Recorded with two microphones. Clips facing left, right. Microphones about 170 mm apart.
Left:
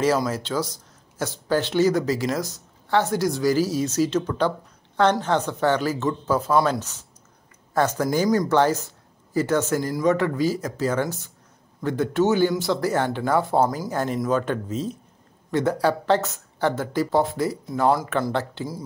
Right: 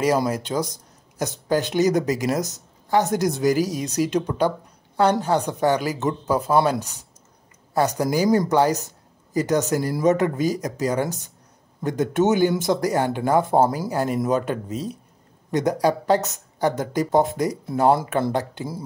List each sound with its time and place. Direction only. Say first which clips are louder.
0.3 s speech: right 1 dB; 15° right (ahead or behind)
13.7 s speech: right 2 dB; 10° right (ahead or behind)
18.3 s speech: right 1 dB; 15° right (ahead or behind)